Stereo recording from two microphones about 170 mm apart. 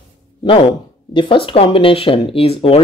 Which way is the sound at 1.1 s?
30° left (ahead or behind).